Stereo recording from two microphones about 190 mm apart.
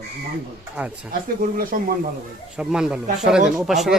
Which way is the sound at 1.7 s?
45° right (ahead or behind).